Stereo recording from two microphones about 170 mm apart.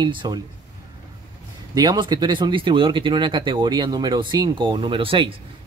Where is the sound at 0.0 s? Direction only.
25° right (ahead or behind).